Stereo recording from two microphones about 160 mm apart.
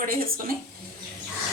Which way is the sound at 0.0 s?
65° right (ahead or behind).